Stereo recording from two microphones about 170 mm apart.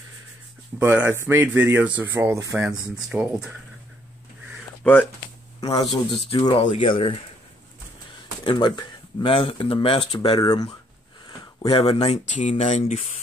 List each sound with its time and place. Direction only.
0.7 s speech: 10° right (ahead or behind)
3.1 s speech: 5° right (ahead or behind)
4.8 s speech: 10° left (ahead or behind)
5.6 s speech: 25° left (ahead or behind)
8.5 s speech: 25° left (ahead or behind)
11.2 s a sound: 25° left (ahead or behind)
11.8 s speech: 40° left (ahead or behind)